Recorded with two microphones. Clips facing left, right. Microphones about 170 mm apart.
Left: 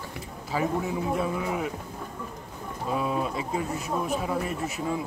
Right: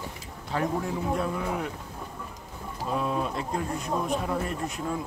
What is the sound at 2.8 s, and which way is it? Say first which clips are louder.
Speech: left 1 dB; 5° left (ahead or behind).